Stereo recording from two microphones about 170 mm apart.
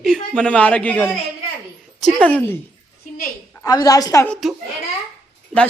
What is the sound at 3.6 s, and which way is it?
Speech, 20° left (ahead or behind).